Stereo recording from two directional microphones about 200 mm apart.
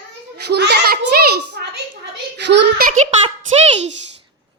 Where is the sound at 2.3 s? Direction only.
60° right (ahead or behind).